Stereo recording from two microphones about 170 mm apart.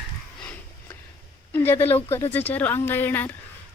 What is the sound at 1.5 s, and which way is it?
Speech, 10° left (ahead or behind).